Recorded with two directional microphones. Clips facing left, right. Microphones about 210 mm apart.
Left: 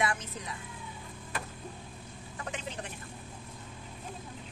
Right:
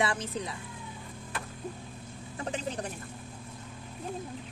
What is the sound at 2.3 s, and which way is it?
Vehicle, 35° right (ahead or behind).